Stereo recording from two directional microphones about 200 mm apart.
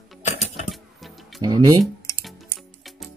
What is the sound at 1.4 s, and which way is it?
Speech, 20° right (ahead or behind).